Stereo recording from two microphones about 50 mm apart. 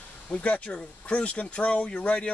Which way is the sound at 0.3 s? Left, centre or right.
Left.